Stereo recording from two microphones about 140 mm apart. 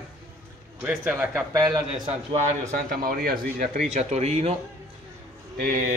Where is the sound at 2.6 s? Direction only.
90° right.